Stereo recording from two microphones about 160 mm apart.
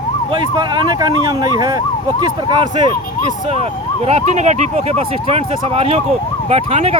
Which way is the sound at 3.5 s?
40° right (ahead or behind).